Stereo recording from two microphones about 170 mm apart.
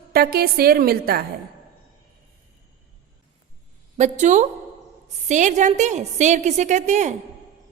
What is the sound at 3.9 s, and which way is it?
A woman's voice, 45° right (ahead or behind).